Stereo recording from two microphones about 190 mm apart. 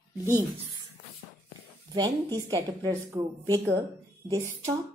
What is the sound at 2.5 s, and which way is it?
A woman's voice, 15° right (ahead or behind).